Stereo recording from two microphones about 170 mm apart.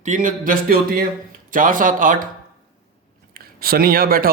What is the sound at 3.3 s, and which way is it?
Speech, 60° right (ahead or behind).